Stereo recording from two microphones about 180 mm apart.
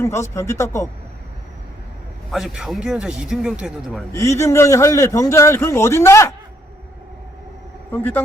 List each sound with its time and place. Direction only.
0.0 s a man's voice: 15° left (ahead or behind)
2.3 s speech: 5° right (ahead or behind)
4.1 s a man's voice: 15° left (ahead or behind)
7.9 s speech: 10° left (ahead or behind)